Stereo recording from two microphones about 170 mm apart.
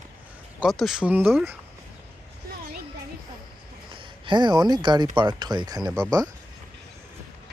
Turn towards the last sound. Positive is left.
turn(degrees=-20)  # may be behind; listen again after turning